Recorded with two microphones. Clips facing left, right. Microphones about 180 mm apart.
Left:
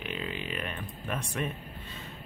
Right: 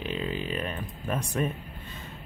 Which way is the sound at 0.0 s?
35° right (ahead or behind).